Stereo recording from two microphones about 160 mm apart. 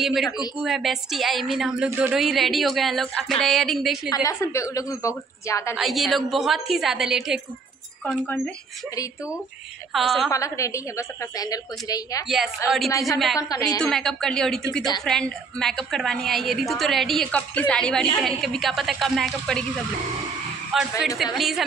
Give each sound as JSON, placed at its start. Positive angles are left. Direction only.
{"t": 0.0, "sound": "a woman's voice", "side_deg": 0}
{"t": 4.1, "sound": "a woman's voice", "side_deg": 20}
{"t": 5.8, "sound": "a woman's voice", "side_deg": 0}
{"t": 8.0, "sound": "speech", "side_deg": 10}
{"t": 9.9, "sound": "a woman's voice", "side_deg": 0}
{"t": 10.3, "sound": "a woman's voice", "side_deg": 20}
{"t": 12.6, "sound": "a woman's voice", "side_deg": 0}
{"t": 13.4, "sound": "a woman's voice", "side_deg": 20}
{"t": 13.8, "sound": "a woman's voice", "side_deg": 5}